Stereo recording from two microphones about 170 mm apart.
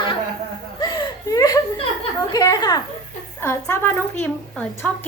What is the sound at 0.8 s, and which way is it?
Whimper, 25° left (ahead or behind).